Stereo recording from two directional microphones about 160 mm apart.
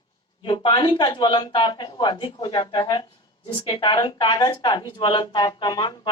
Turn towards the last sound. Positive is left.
turn(degrees=25)  # may be behind; listen again after turning